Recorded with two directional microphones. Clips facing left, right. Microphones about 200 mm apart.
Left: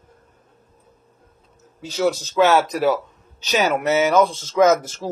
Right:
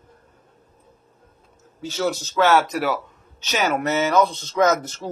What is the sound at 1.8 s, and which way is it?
Speech, 15° left (ahead or behind).